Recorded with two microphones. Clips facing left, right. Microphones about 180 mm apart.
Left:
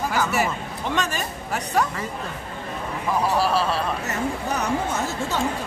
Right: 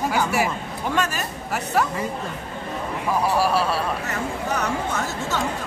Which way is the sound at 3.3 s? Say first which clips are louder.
Right 1 dB; 10° right (ahead or behind).